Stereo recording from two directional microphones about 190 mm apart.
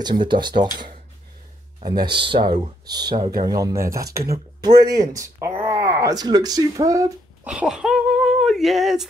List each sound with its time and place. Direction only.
0.0 s speech: 25° right (ahead or behind)
1.9 s a child's voice: 25° right (ahead or behind)
7.4 s a sound: 5° right (ahead or behind)